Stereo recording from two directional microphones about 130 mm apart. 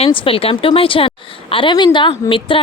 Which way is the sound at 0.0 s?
45° left (ahead or behind).